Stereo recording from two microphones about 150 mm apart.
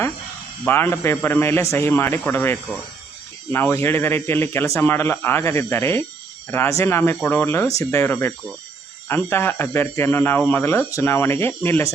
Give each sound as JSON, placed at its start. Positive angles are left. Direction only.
{"t": 0.6, "sound": "speech", "side_deg": 15}